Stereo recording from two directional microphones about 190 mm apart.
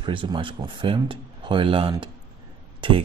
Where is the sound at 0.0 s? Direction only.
25° right (ahead or behind).